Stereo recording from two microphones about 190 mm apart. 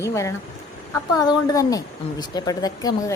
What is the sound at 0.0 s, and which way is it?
A woman's voice, 15° left (ahead or behind).